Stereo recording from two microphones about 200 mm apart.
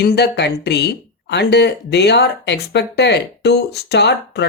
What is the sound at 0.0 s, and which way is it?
Speech, 55° left (ahead or behind).